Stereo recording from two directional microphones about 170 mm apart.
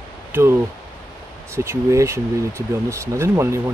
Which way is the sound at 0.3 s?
15° right (ahead or behind).